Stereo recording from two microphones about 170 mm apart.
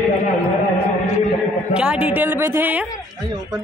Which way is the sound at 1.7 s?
5° right (ahead or behind).